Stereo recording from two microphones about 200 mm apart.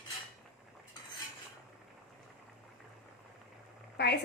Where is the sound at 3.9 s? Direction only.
55° left (ahead or behind).